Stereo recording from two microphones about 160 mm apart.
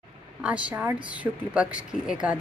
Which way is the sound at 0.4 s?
5° right (ahead or behind).